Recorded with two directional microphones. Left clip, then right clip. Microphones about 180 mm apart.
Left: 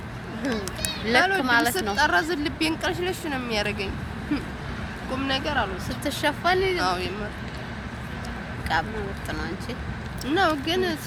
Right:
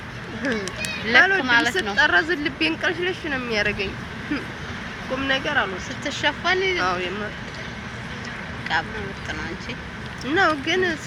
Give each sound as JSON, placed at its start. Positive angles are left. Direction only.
{"t": 1.2, "sound": "speech", "side_deg": -10}
{"t": 1.5, "sound": "speech", "side_deg": 25}
{"t": 2.0, "sound": "speech", "side_deg": -5}
{"t": 5.3, "sound": "speech", "side_deg": -5}
{"t": 6.1, "sound": "speech", "side_deg": 25}
{"t": 6.8, "sound": "speech", "side_deg": -5}
{"t": 8.7, "sound": "speech", "side_deg": 25}
{"t": 10.2, "sound": "speech", "side_deg": -10}